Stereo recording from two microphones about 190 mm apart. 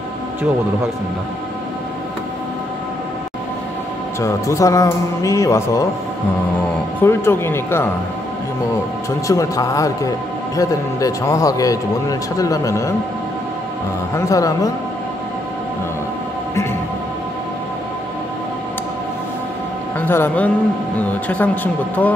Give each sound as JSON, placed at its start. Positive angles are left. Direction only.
{"t": 4.2, "sound": "a man's voice", "side_deg": 15}
{"t": 7.0, "sound": "a man's voice", "side_deg": 10}
{"t": 9.3, "sound": "a man's voice", "side_deg": 15}
{"t": 14.1, "sound": "a man's voice", "side_deg": 20}
{"t": 20.0, "sound": "a man's voice", "side_deg": 10}